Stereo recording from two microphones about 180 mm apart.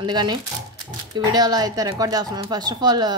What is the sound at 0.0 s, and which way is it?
Speech, 25° right (ahead or behind).